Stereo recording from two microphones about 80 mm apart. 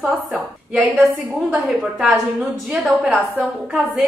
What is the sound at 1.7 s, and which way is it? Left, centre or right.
A woman's voice, centre.